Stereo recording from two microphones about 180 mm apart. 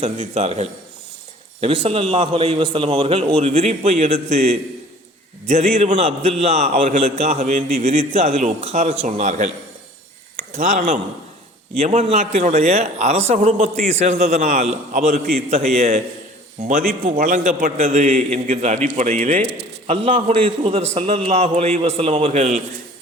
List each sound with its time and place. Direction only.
0.0 s a man's voice: 40° right (ahead or behind)
5.8 s a man's voice: 35° right (ahead or behind)
10.6 s a man's voice: 45° right (ahead or behind)